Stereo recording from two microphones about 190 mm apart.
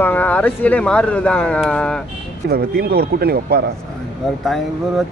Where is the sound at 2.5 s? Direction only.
55° right (ahead or behind).